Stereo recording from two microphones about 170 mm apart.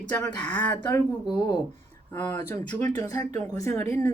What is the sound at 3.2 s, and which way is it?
Speech, 40° right (ahead or behind).